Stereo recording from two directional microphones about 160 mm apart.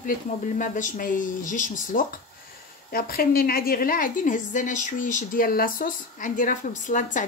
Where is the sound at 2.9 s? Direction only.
70° left (ahead or behind).